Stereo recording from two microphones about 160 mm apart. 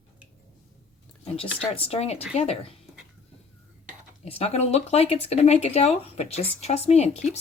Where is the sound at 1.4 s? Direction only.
35° left (ahead or behind).